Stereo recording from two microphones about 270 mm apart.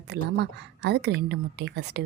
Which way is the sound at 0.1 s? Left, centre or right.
Right.